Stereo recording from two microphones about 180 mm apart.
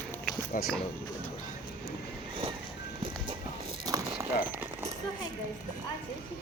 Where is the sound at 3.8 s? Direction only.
20° right (ahead or behind).